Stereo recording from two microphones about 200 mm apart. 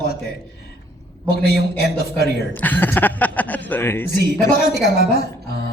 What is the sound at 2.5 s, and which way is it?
Speech, 10° left (ahead or behind).